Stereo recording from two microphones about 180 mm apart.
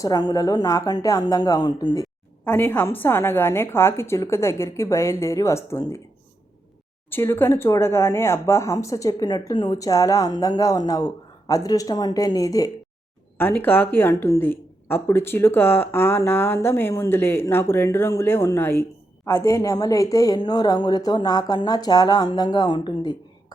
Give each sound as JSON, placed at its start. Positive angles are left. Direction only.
{"t": 0.0, "sound": "speech", "side_deg": 20}
{"t": 2.4, "sound": "speech", "side_deg": 10}
{"t": 7.1, "sound": "speech", "side_deg": 15}